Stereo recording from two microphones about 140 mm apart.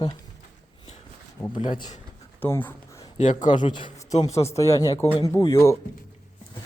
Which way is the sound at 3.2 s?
60° left (ahead or behind).